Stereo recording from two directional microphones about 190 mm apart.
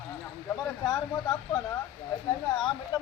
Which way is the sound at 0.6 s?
20° left (ahead or behind).